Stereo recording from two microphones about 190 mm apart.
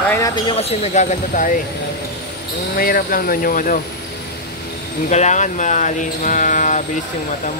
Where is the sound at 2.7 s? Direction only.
50° left (ahead or behind).